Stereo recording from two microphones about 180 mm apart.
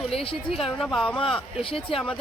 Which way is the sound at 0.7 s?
Centre (ahead or behind).